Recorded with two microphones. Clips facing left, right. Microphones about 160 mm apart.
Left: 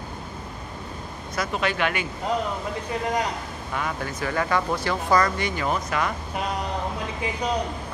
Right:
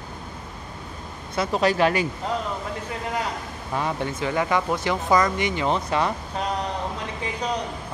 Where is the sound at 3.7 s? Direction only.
25° right (ahead or behind).